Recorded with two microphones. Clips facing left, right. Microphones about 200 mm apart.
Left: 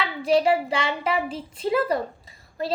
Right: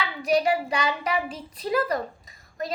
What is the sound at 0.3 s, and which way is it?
A woman's voice, 25° left (ahead or behind).